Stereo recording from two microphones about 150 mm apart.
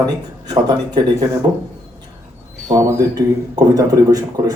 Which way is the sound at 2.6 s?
25° right (ahead or behind).